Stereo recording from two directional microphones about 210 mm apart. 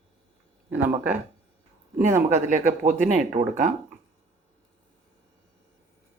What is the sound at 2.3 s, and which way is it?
Speech, 35° right (ahead or behind).